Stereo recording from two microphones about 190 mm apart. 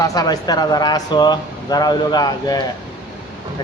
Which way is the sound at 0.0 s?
20° left (ahead or behind).